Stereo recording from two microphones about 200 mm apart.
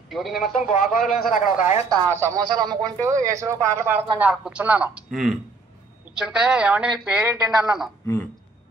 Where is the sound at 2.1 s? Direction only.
15° right (ahead or behind).